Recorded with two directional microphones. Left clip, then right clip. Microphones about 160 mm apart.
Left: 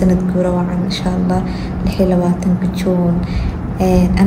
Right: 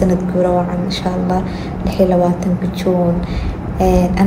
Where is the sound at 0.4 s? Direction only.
10° left (ahead or behind).